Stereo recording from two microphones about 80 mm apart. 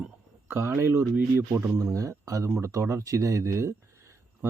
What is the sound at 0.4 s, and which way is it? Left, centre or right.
Speech, right.